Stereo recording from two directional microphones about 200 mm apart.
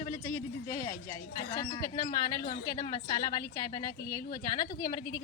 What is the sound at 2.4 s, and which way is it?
Speech, 50° left (ahead or behind).